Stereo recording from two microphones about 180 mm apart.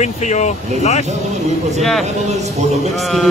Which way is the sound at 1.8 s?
Centre (ahead or behind).